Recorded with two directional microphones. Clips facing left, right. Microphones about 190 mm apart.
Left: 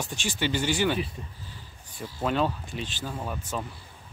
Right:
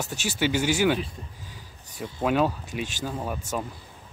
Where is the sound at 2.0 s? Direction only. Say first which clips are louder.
Right 3 dB; 10° right (ahead or behind).